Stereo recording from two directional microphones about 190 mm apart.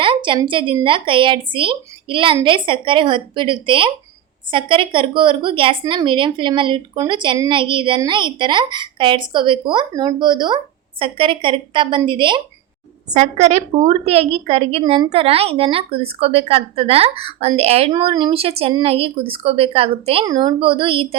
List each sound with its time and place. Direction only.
0.0 s a woman's voice: 25° right (ahead or behind)
13.1 s a woman's voice: 35° right (ahead or behind)